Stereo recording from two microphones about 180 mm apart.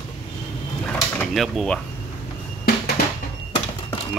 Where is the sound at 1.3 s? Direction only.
Centre (ahead or behind).